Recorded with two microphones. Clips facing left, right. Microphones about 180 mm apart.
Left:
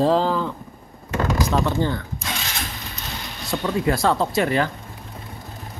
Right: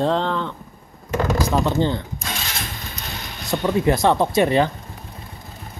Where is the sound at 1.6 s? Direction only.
20° right (ahead or behind).